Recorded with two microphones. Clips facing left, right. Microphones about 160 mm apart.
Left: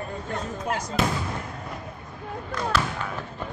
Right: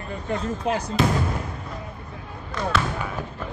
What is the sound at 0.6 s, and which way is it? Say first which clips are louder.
Speech: right 5 dB; 75° right (ahead or behind).